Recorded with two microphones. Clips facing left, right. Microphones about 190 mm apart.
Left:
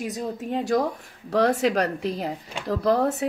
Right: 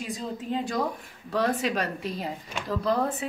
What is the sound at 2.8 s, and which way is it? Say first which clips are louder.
Speech: left 5 dB; 70° left (ahead or behind).